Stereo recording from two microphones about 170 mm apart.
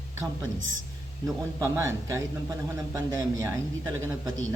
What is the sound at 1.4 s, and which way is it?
A man's voice, 20° right (ahead or behind).